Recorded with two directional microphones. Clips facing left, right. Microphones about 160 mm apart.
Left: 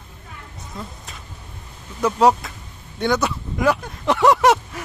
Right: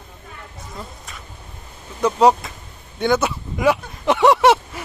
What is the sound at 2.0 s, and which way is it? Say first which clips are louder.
Speech: right 1 dB; centre (ahead or behind).